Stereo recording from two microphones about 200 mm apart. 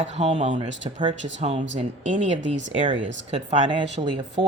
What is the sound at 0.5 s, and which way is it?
Speech, 35° right (ahead or behind).